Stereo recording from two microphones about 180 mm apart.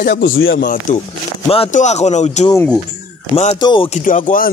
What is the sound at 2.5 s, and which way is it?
Speech, 10° left (ahead or behind).